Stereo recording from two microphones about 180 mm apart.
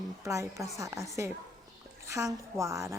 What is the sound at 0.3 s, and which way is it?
A woman's voice, 15° right (ahead or behind).